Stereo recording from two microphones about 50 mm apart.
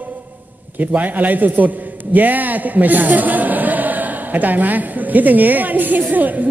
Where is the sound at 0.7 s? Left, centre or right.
Right.